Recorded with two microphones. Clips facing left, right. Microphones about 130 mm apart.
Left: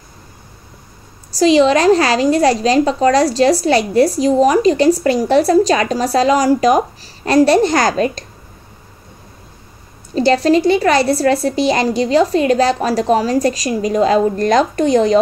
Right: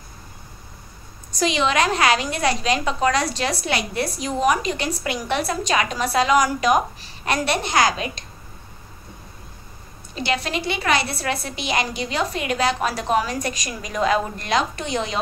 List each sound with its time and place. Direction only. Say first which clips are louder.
1.3 s a woman's voice: left 10 dB; 35° left (ahead or behind)
10.1 s a woman's voice: left 13 dB; 35° left (ahead or behind)